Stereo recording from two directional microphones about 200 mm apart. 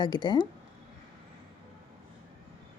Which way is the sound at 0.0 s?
20° left (ahead or behind).